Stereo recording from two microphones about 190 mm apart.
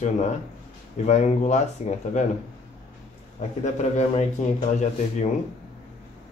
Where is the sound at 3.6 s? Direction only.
35° left (ahead or behind).